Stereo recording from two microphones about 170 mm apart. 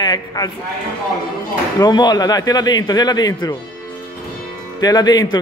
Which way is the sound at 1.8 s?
25° left (ahead or behind).